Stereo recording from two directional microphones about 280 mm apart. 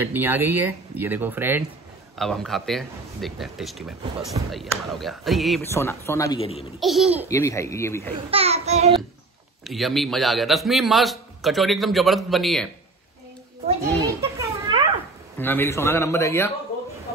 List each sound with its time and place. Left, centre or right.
0.0 s a man's voice: centre
6.8 s a man's voice: centre
7.2 s speech: centre
8.3 s a child's voice: right
9.7 s a man's voice: centre
13.7 s children playing: centre
15.3 s speech: centre